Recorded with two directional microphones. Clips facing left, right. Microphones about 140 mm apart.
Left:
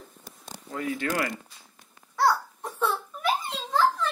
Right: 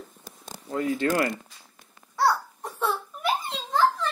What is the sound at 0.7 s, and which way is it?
Speech, 30° right (ahead or behind).